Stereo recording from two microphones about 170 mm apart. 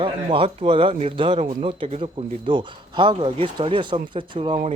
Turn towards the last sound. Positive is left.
turn(degrees=-30)  # may be behind; listen again after turning